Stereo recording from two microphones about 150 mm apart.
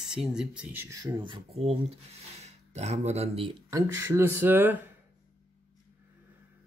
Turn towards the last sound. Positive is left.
turn(degrees=-15)  # may be behind; listen again after turning